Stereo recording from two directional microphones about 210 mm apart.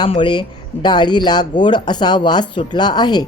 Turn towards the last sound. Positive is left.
turn(degrees=20)  # may be behind; listen again after turning